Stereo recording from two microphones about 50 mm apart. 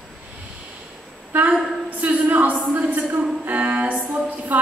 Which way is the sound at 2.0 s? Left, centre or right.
Right.